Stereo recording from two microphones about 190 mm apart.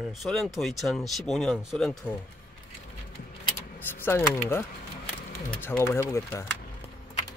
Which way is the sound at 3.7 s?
10° left (ahead or behind).